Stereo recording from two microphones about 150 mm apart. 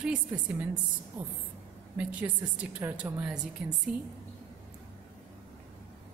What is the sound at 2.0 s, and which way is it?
A woman's voice, 10° right (ahead or behind).